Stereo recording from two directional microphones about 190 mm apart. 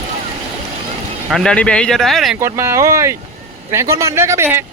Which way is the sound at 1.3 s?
5° left (ahead or behind).